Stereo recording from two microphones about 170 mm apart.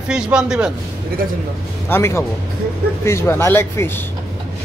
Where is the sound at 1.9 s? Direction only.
15° left (ahead or behind).